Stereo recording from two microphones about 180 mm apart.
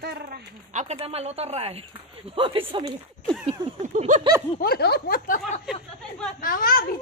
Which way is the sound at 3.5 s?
45° right (ahead or behind).